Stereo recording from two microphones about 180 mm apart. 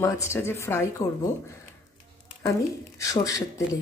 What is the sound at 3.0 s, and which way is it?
Speech, 20° left (ahead or behind).